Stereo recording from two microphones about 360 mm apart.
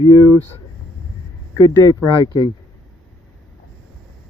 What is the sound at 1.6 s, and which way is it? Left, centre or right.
Speech, centre.